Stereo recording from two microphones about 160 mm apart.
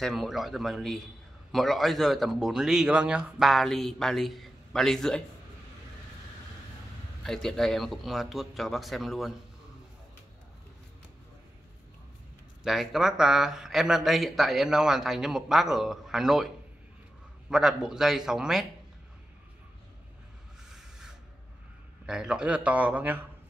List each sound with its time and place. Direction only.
0.0 s speech: centre (ahead or behind)
7.2 s speech: centre (ahead or behind)
12.6 s speech: centre (ahead or behind)
17.5 s speech: 5° right (ahead or behind)
22.0 s a man's voice: 5° right (ahead or behind)